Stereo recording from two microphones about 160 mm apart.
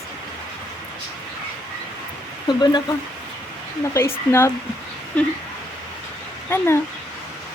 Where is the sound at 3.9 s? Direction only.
15° left (ahead or behind).